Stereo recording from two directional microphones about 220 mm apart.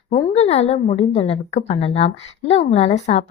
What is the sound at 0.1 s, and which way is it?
A woman's voice, 30° left (ahead or behind).